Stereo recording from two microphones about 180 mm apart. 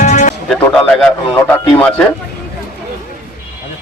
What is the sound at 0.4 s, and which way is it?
A man's voice, 5° left (ahead or behind).